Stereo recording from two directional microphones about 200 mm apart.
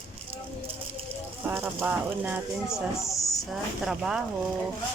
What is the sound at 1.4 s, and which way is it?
Speech, 10° right (ahead or behind).